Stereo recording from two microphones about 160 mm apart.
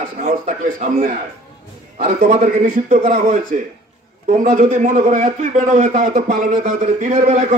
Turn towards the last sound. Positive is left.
turn(degrees=-45)  # may be behind; listen again after turning